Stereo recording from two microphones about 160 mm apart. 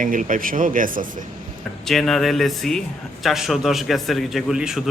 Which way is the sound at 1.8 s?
Centre (ahead or behind).